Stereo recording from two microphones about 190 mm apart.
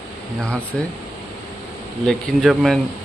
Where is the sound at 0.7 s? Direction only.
Centre (ahead or behind).